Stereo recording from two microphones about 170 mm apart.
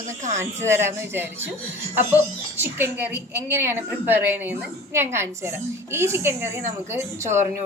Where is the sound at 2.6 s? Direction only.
15° right (ahead or behind).